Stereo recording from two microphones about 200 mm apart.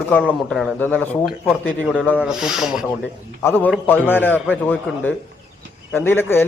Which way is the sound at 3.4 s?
10° left (ahead or behind).